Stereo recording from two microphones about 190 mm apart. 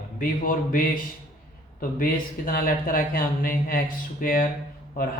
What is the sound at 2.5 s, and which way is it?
Speech, 50° left (ahead or behind).